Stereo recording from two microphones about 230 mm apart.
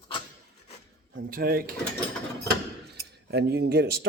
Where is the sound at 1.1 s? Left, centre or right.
Right.